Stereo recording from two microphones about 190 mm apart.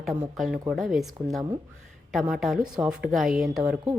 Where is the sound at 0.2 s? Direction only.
Centre (ahead or behind).